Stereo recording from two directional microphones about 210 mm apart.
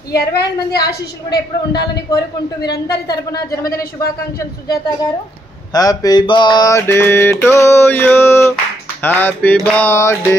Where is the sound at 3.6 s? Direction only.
45° left (ahead or behind).